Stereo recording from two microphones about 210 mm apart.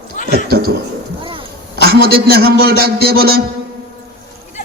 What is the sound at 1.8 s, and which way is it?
A man's voice, 45° right (ahead or behind).